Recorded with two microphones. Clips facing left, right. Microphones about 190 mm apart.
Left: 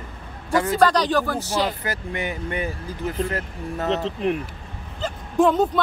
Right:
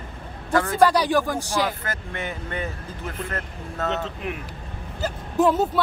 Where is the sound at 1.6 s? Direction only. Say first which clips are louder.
Left 2 dB; 15° left (ahead or behind).